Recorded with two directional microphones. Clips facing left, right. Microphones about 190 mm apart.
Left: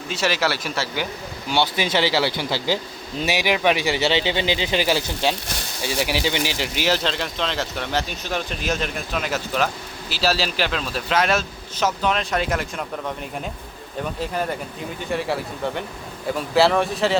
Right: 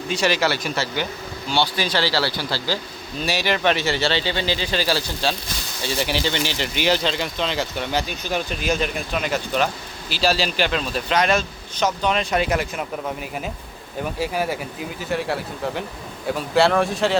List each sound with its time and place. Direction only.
0.1 s speech: 5° left (ahead or behind)
1.5 s speech: 20° left (ahead or behind); by 17.2 s centre (ahead or behind)